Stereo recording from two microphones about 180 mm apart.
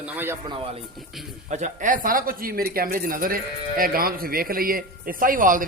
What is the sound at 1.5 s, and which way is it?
A man's voice, 45° right (ahead or behind).